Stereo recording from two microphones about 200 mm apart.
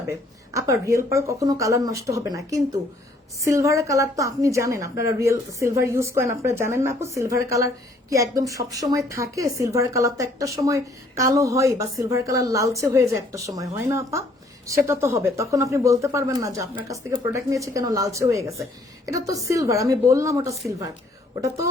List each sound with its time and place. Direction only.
0.1 s a woman's voice: 15° right (ahead or behind)
3.4 s a woman's voice: 15° right (ahead or behind)